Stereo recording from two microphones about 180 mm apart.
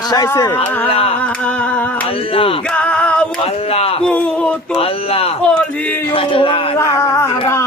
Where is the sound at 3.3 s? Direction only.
35° left (ahead or behind).